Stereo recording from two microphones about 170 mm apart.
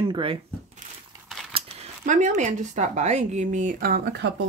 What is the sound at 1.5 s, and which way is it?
Speech, 40° right (ahead or behind).